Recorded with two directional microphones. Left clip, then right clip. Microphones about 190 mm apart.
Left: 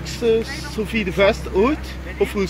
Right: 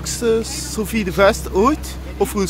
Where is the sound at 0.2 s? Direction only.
25° right (ahead or behind).